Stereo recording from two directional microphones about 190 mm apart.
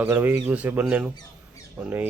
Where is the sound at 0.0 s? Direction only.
10° right (ahead or behind).